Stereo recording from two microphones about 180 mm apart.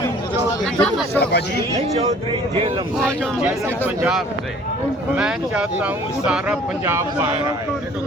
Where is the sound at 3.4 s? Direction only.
10° right (ahead or behind).